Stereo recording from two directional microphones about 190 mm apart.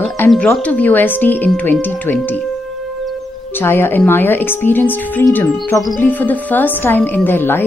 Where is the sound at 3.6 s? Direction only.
10° left (ahead or behind).